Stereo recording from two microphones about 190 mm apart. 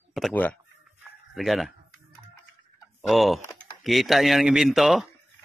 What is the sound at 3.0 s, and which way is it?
Speech, centre (ahead or behind).